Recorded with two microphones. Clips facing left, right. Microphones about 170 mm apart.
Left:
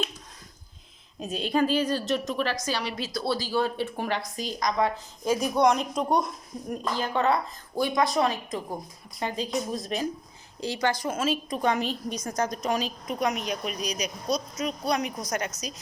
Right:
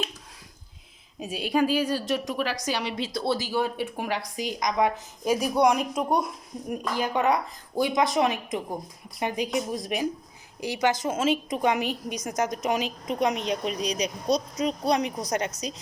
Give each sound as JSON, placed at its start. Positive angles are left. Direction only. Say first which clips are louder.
{"t": 1.2, "sound": "a woman's voice", "louder": "right 1 dB", "side_deg": -10}